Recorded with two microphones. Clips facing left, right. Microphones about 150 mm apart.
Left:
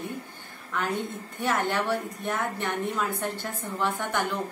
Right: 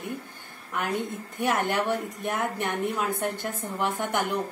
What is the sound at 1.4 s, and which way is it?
A woman's voice, 15° right (ahead or behind).